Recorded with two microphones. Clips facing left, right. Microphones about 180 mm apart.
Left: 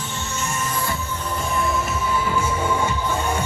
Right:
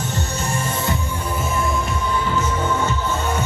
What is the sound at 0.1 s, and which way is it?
Music, 35° right (ahead or behind).